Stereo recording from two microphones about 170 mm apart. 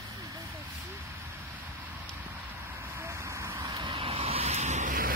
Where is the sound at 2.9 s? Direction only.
15° right (ahead or behind).